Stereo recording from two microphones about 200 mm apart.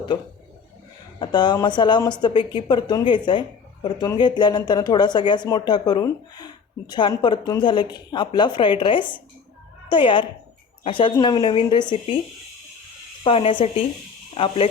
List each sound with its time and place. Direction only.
1.2 s speech: 20° left (ahead or behind)
13.2 s speech: 25° left (ahead or behind)